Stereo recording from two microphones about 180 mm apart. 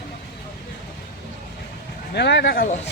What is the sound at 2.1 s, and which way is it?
Speech, 70° left (ahead or behind).